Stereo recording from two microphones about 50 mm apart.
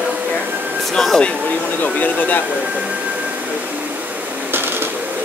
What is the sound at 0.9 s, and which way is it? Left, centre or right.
Speech, centre.